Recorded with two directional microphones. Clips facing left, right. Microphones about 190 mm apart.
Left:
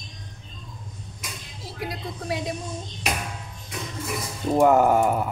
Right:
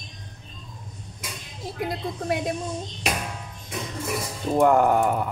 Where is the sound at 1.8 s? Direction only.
50° right (ahead or behind).